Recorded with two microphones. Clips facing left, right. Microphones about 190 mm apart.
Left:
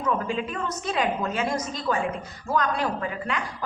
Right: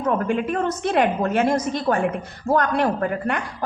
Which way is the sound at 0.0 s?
55° right (ahead or behind).